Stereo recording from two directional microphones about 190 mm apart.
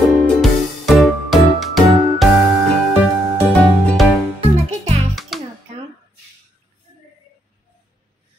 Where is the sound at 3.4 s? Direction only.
5° right (ahead or behind).